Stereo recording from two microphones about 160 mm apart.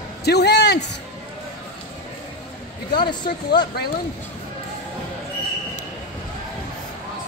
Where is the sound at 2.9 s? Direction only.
30° left (ahead or behind).